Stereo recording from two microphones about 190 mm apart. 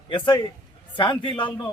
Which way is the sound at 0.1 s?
25° left (ahead or behind).